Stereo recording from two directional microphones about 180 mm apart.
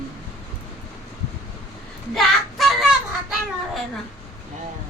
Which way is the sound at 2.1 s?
Centre (ahead or behind).